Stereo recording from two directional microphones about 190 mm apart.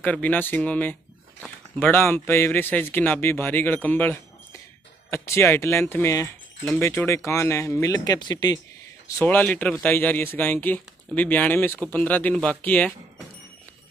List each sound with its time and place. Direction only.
0.0 s speech: 10° left (ahead or behind)
9.0 s speech: 10° left (ahead or behind)